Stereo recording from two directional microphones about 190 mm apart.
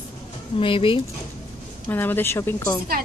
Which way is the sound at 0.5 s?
30° left (ahead or behind).